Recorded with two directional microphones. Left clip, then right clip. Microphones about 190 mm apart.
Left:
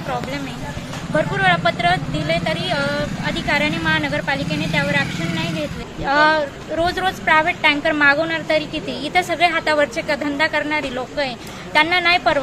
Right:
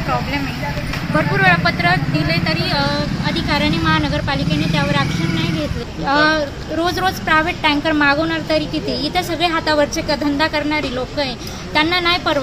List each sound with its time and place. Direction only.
1.1 s speech: 25° left (ahead or behind)
2.7 s a woman's voice: 10° left (ahead or behind)